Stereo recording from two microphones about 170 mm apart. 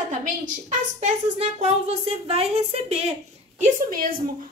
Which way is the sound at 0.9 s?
40° right (ahead or behind).